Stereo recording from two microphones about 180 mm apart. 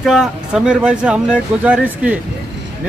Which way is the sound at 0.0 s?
5° right (ahead or behind).